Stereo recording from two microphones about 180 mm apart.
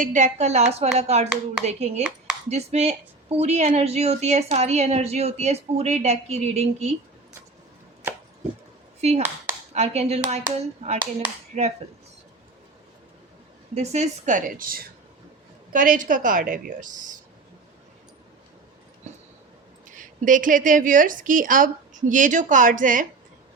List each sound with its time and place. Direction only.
0.0 s a woman's voice: 45° right (ahead or behind)
9.0 s a woman's voice: 35° right (ahead or behind)
13.7 s a woman's voice: 40° right (ahead or behind)
19.1 s a sound: 40° right (ahead or behind)
20.0 s a woman's voice: 45° right (ahead or behind)